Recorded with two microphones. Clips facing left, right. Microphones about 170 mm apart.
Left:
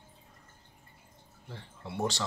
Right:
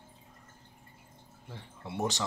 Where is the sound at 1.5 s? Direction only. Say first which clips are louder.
Even; 20° right (ahead or behind).